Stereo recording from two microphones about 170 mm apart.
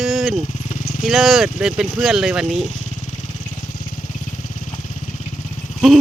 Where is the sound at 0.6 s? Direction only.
50° left (ahead or behind).